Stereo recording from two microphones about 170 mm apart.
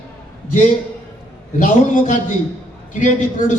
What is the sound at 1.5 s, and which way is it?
Speech, 50° left (ahead or behind).